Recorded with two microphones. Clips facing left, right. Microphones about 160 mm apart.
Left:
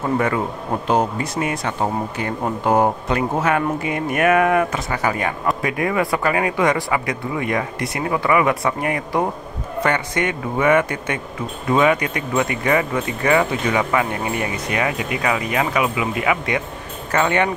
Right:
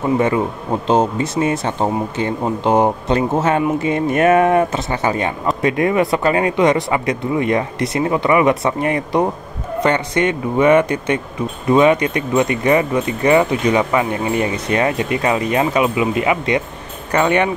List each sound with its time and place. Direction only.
0.0 s speech: 20° right (ahead or behind)